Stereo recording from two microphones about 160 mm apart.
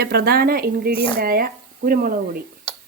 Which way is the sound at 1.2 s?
65° right (ahead or behind).